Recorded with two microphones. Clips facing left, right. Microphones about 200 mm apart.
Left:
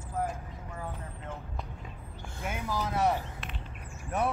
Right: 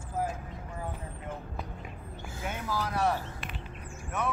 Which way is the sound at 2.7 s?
20° left (ahead or behind).